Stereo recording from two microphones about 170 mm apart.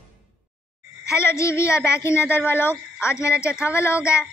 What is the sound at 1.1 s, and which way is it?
Speech, 15° left (ahead or behind).